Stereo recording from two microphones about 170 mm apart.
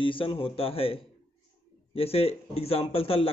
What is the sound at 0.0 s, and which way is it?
A man's voice, 30° left (ahead or behind).